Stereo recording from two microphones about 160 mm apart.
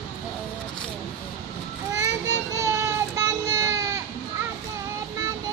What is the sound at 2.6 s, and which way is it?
Child singing, 20° right (ahead or behind).